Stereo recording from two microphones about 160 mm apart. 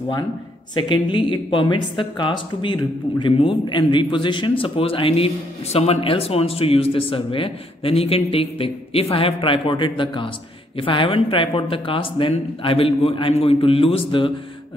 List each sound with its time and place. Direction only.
0.7 s speech: 30° left (ahead or behind)